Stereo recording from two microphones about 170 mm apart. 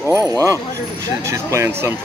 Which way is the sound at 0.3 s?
20° right (ahead or behind).